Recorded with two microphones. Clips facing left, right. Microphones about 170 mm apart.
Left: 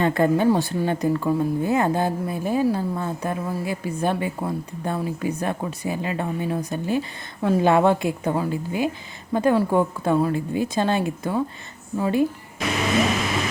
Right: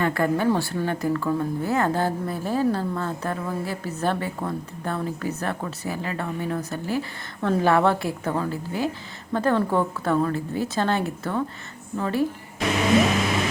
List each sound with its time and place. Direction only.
0.0 s speech: 20° left (ahead or behind)